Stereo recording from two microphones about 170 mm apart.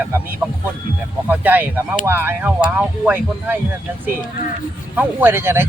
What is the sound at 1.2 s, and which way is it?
Speech, 10° right (ahead or behind).